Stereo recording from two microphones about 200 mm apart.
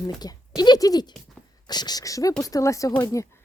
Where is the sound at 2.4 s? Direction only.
15° left (ahead or behind).